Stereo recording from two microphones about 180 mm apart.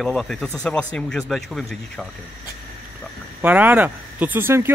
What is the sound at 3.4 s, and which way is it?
A man's voice, 10° right (ahead or behind).